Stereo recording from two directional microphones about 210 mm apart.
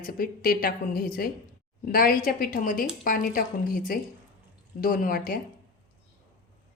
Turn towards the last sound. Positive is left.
turn(degrees=45)  # may be behind; listen again after turning